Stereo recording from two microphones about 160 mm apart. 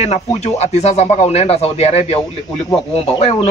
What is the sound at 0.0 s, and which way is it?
A man's voice, 45° left (ahead or behind).